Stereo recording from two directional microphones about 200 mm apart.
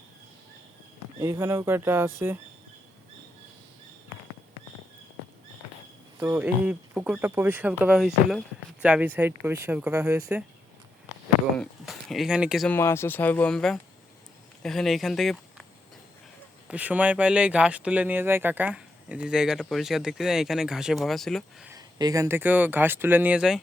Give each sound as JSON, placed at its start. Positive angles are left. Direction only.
{"t": 1.2, "sound": "speech", "side_deg": -15}
{"t": 6.1, "sound": "speech", "side_deg": -10}
{"t": 11.5, "sound": "speech", "side_deg": 5}
{"t": 12.7, "sound": "speech", "side_deg": 10}
{"t": 16.6, "sound": "speech", "side_deg": -5}
{"t": 21.7, "sound": "speech", "side_deg": -20}